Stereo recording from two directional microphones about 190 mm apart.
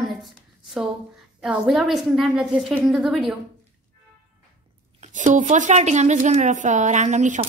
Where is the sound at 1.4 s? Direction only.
Centre (ahead or behind).